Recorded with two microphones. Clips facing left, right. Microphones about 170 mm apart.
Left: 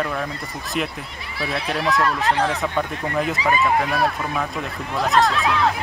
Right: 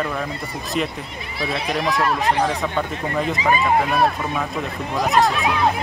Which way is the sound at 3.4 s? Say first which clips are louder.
Right 2 dB; 20° right (ahead or behind).